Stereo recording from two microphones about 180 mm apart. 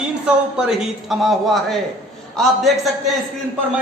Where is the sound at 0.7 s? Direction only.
Centre (ahead or behind).